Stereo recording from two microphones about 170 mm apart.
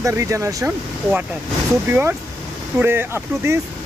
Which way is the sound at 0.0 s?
20° right (ahead or behind).